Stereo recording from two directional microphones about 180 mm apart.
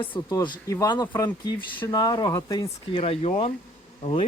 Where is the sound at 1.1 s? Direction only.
10° left (ahead or behind).